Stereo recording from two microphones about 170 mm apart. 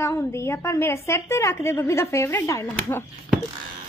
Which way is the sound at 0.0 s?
15° left (ahead or behind).